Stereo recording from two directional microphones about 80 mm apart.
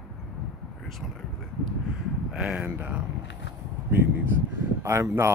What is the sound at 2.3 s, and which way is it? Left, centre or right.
Speech, centre.